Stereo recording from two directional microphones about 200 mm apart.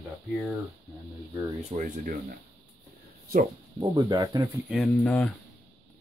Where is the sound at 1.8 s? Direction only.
45° right (ahead or behind).